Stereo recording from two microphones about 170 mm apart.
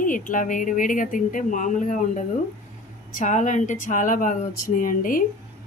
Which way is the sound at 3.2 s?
45° left (ahead or behind).